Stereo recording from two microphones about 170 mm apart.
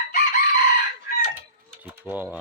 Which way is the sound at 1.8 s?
10° right (ahead or behind).